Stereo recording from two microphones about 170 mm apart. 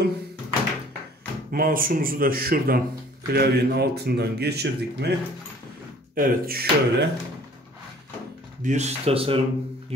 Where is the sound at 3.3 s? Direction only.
70° right (ahead or behind).